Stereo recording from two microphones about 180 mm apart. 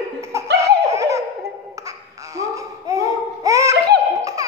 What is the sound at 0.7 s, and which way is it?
Baby laughter, 15° right (ahead or behind).